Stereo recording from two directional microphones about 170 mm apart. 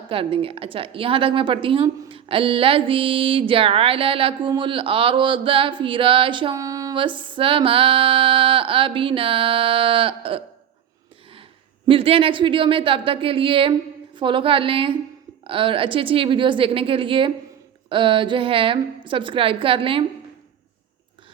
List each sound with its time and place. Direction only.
0.1 s a woman's voice: 30° right (ahead or behind)
11.9 s a woman's voice: 35° right (ahead or behind)